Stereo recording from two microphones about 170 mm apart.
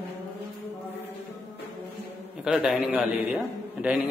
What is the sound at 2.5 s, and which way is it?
A man's voice, centre (ahead or behind).